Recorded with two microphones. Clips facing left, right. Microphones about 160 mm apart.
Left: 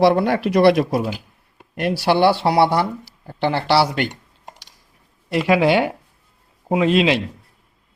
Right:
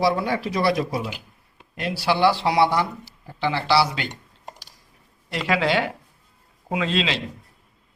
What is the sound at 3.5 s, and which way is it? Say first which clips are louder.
Speech: left 3 dB; 60° left (ahead or behind).